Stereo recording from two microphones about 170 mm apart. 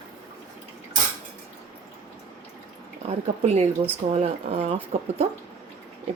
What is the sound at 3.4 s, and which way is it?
Speech, 40° right (ahead or behind).